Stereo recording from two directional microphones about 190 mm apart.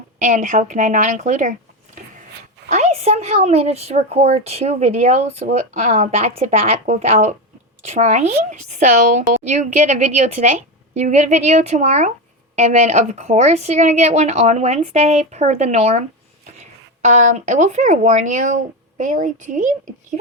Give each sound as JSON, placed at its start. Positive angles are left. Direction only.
{"t": 0.2, "sound": "a woman's voice", "side_deg": -40}
{"t": 2.6, "sound": "a woman's voice", "side_deg": -35}